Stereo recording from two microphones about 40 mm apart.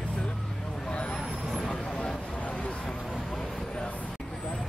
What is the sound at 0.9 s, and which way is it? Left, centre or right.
Vehicle, left.